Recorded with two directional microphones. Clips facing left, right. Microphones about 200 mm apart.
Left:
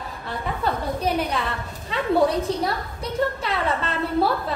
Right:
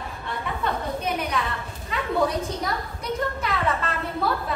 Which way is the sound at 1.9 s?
30° left (ahead or behind).